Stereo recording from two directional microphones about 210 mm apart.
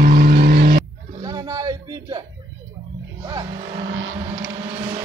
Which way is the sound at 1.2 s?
15° right (ahead or behind).